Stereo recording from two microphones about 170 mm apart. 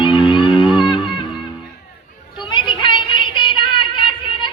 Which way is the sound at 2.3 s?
25° left (ahead or behind).